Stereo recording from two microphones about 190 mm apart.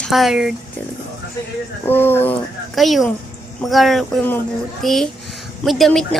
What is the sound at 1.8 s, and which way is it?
Speech, 10° left (ahead or behind).